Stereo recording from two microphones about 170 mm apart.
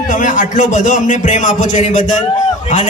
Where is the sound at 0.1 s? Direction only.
50° left (ahead or behind).